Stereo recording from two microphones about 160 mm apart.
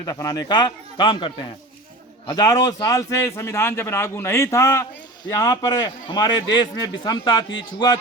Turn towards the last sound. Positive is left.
turn(degrees=30)  # may be behind; listen again after turning